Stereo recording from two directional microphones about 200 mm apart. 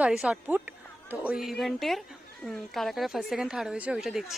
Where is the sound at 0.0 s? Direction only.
5° right (ahead or behind).